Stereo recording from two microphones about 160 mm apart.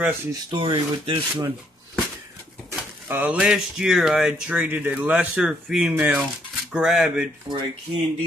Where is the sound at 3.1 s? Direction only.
10° right (ahead or behind).